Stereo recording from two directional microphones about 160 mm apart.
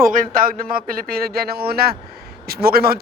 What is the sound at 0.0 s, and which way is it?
A man's voice, 60° right (ahead or behind).